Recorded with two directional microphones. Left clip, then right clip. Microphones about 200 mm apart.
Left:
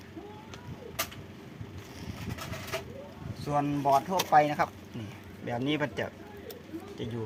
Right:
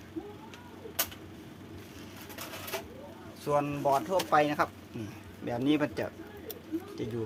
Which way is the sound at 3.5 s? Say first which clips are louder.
Left 2 dB; 20° right (ahead or behind).